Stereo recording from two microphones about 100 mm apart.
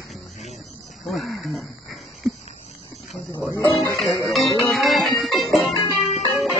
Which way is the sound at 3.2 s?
30° left (ahead or behind).